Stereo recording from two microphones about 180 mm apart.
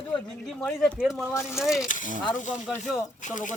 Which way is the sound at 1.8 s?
45° left (ahead or behind).